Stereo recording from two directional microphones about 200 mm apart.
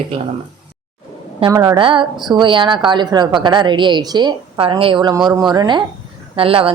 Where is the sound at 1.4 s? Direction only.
20° right (ahead or behind).